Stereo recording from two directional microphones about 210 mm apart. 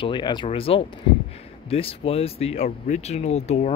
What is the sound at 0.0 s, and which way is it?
Speech, 20° left (ahead or behind).